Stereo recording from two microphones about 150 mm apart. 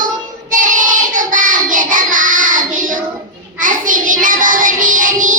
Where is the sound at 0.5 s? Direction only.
65° right (ahead or behind).